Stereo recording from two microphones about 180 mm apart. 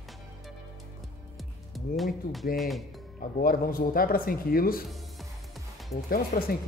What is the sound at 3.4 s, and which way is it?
Speech, 50° left (ahead or behind).